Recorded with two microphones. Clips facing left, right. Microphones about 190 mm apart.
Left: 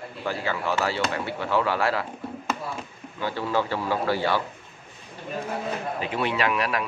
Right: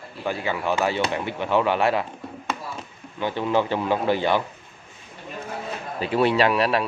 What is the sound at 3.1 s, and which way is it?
Speech, 20° right (ahead or behind).